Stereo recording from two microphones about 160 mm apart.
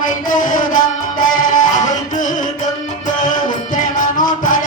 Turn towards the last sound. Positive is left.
turn(degrees=55)  # may be behind; listen again after turning